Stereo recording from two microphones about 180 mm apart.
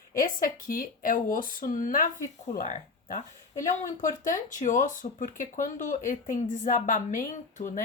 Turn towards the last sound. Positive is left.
turn(degrees=45)  # may be behind; listen again after turning